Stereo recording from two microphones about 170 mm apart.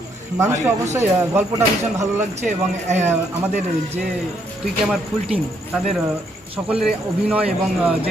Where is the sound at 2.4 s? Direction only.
40° right (ahead or behind).